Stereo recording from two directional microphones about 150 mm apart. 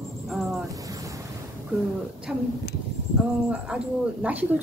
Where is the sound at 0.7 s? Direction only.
25° right (ahead or behind).